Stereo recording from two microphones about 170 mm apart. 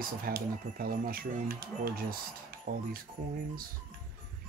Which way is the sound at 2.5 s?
60° right (ahead or behind).